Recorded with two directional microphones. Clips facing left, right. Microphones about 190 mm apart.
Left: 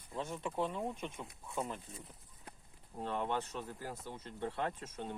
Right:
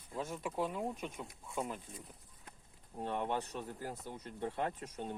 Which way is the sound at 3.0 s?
15° right (ahead or behind).